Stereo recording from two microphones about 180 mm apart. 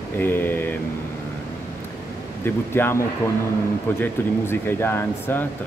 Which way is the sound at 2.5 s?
10° left (ahead or behind).